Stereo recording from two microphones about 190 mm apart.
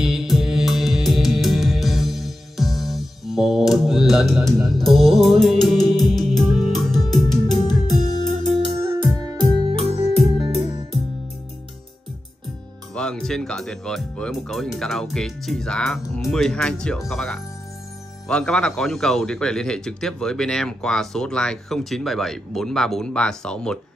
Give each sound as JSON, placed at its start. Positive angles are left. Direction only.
{"t": 0.0, "sound": "music", "side_deg": 0}
{"t": 8.6, "sound": "music", "side_deg": -20}
{"t": 12.9, "sound": "speech", "side_deg": 5}